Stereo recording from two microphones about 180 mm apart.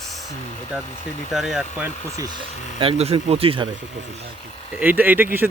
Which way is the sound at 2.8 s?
35° right (ahead or behind).